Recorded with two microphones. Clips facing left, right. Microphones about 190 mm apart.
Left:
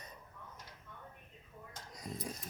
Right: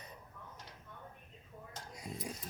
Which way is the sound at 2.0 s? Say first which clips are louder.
Left 1 dB; 15° right (ahead or behind).